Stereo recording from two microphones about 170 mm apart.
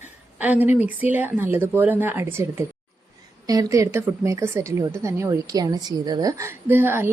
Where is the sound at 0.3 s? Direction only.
10° right (ahead or behind).